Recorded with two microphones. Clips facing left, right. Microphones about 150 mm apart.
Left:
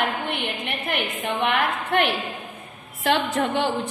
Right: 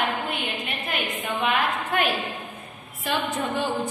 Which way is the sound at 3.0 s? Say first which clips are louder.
Left 5 dB; 80° left.